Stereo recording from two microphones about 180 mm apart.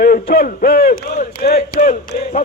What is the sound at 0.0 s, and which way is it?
Speech, 55° left (ahead or behind).